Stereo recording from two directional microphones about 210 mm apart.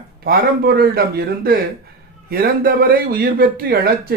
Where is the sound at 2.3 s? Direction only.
45° right (ahead or behind).